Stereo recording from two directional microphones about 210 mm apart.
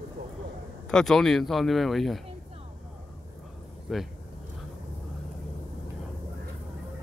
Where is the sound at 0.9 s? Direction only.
Centre (ahead or behind).